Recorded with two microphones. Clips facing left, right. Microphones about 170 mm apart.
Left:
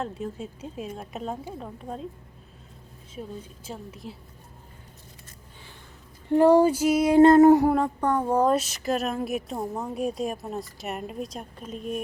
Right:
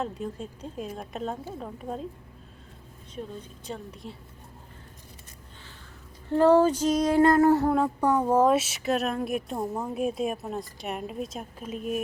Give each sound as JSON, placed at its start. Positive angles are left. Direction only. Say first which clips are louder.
{"t": 0.0, "sound": "speech", "louder": "even", "side_deg": 5}
{"t": 3.2, "sound": "speech", "louder": "even", "side_deg": 5}
{"t": 6.3, "sound": "female singing", "louder": "left 2 dB", "side_deg": 15}
{"t": 7.2, "sound": "a sound", "louder": "left 6 dB", "side_deg": 25}
{"t": 7.7, "sound": "speech", "louder": "even", "side_deg": -5}